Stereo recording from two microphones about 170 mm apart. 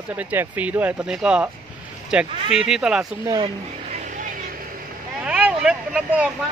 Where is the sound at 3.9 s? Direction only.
50° right (ahead or behind).